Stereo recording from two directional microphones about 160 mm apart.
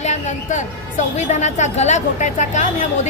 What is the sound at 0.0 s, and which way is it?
A woman's voice, 50° left (ahead or behind).